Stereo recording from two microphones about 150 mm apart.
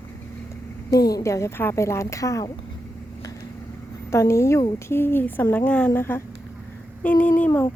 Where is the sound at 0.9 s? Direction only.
25° left (ahead or behind).